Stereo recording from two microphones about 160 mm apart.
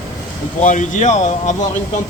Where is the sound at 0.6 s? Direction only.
50° left (ahead or behind).